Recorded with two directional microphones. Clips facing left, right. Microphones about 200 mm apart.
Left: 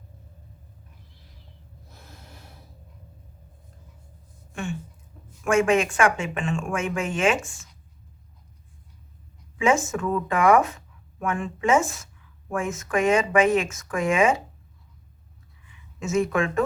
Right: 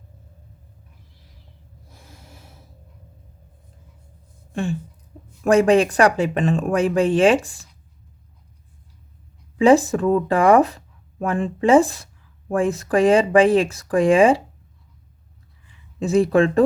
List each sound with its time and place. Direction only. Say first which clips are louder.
1.9 s snort: right 1 dB; 10° right (ahead or behind)
4.5 s speech: right 7 dB; 35° right (ahead or behind)
9.6 s speech: right 8 dB; 35° right (ahead or behind)
15.6 s speech: right 7 dB; 35° right (ahead or behind)